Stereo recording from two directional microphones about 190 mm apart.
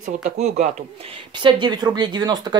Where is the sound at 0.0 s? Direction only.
40° right (ahead or behind).